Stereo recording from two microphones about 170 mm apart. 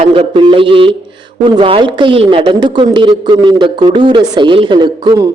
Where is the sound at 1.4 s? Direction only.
30° right (ahead or behind).